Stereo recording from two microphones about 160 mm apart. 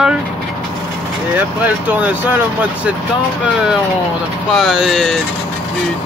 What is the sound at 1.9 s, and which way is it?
Speech, 10° right (ahead or behind).